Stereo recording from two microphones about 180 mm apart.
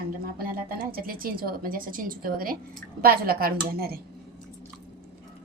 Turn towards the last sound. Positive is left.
turn(degrees=-55)  # may be behind; listen again after turning